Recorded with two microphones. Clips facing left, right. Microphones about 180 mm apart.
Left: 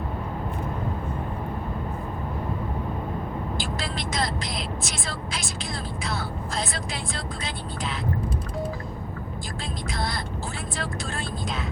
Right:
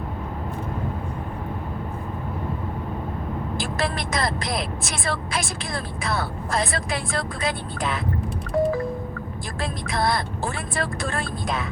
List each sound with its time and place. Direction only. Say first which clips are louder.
3.8 s vehicle: right 5 dB; 55° right (ahead or behind)
5.0 s speech: right 6 dB; 55° right (ahead or behind)
9.9 s speech: right 8 dB; 60° right (ahead or behind)